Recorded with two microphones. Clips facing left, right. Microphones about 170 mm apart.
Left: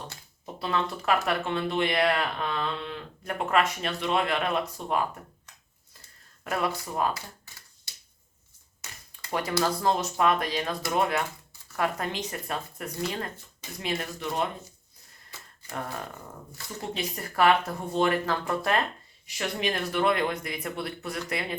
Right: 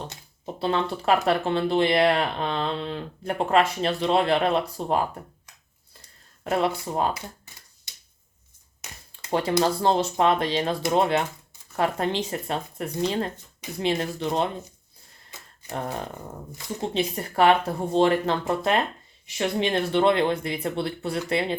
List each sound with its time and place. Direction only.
0.1 s speech: 30° right (ahead or behind)
6.4 s speech: 25° right (ahead or behind)